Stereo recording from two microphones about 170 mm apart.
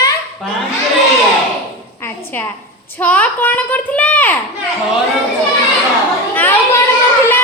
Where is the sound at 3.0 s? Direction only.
10° left (ahead or behind).